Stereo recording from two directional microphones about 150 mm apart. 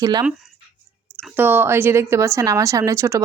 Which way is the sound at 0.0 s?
25° right (ahead or behind).